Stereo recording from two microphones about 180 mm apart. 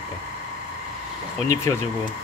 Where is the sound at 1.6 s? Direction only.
15° left (ahead or behind).